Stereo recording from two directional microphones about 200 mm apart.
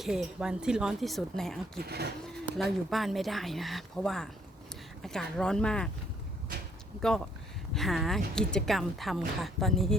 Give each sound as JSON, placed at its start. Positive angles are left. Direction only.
{"t": 0.0, "sound": "speech", "side_deg": 0}
{"t": 1.8, "sound": "speech", "side_deg": -55}
{"t": 2.2, "sound": "speech", "side_deg": 0}
{"t": 7.7, "sound": "speech", "side_deg": 0}